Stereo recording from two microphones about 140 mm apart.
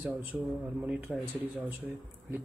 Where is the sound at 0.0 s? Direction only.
15° right (ahead or behind).